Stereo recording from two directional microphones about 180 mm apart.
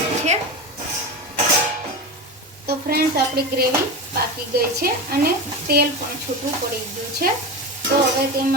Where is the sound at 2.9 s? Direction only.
55° right (ahead or behind).